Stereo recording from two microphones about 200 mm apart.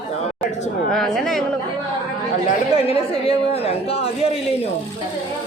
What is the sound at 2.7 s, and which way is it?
A woman's voice, 30° left (ahead or behind).